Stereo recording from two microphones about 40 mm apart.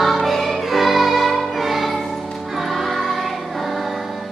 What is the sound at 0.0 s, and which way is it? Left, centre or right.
Music, centre.